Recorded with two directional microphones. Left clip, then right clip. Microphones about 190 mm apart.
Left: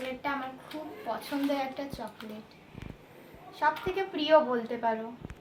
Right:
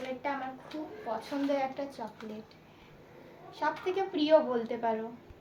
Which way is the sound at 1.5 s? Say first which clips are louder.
Right 1 dB; 10° right (ahead or behind).